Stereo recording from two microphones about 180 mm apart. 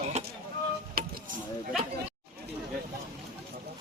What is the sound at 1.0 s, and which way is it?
Vehicle, 55° right (ahead or behind).